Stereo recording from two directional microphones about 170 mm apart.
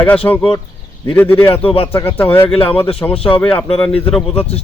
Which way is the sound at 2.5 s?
35° left (ahead or behind).